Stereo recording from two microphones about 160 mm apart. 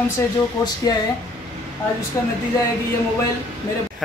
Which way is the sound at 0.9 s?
25° left (ahead or behind).